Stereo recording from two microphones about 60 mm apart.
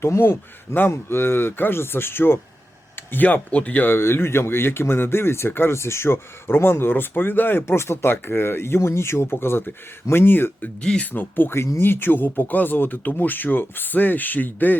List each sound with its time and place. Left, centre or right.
0.0 s speech: left
3.1 s speech: left
3.9 s speech: left
7.6 s speech: left